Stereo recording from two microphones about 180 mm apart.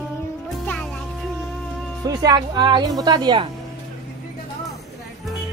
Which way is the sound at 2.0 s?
25° right (ahead or behind).